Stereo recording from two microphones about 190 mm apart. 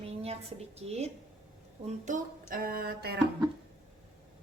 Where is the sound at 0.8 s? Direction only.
35° right (ahead or behind).